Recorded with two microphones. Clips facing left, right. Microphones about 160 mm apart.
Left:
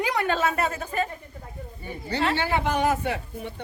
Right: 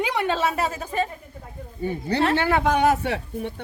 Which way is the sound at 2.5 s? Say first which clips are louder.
Right 4 dB; 75° right (ahead or behind).